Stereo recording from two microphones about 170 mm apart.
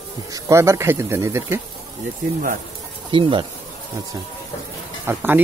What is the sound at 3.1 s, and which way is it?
Speech, 30° right (ahead or behind).